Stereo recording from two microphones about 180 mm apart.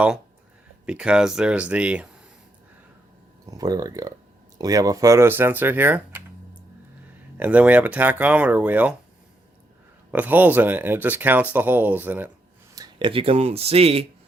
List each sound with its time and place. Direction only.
0.9 s speech: 5° right (ahead or behind)
3.4 s speech: 20° right (ahead or behind)
7.3 s speech: 10° right (ahead or behind)
10.1 s speech: 10° right (ahead or behind)
12.7 s speech: 25° right (ahead or behind)